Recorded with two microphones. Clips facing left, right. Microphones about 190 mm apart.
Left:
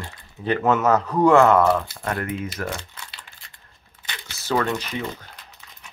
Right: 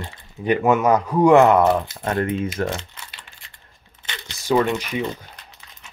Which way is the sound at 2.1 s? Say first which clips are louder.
Right 6 dB; 25° right (ahead or behind).